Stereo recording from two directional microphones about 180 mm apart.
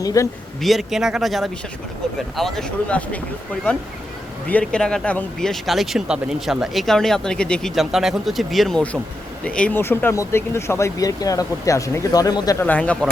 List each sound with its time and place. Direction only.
0.0 s a man's voice: 20° left (ahead or behind)
0.6 s speech: centre (ahead or behind); by 12.6 s 20° left (ahead or behind)
12.6 s speech: 10° left (ahead or behind)